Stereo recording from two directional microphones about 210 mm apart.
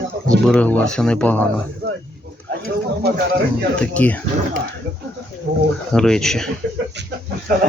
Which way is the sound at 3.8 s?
5° left (ahead or behind).